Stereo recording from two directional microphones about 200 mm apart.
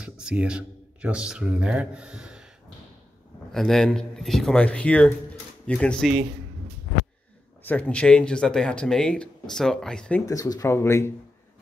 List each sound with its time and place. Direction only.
0.0 s speech: 5° right (ahead or behind)
3.5 s speech: centre (ahead or behind)
7.6 s speech: 10° left (ahead or behind)
10.2 s speech: 15° left (ahead or behind)